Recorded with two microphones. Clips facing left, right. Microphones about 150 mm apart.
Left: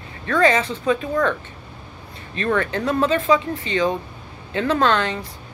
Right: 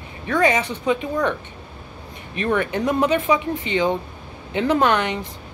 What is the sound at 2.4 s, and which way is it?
A man's voice, 15° right (ahead or behind).